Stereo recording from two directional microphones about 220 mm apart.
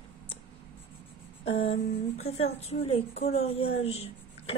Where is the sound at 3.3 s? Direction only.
30° left (ahead or behind).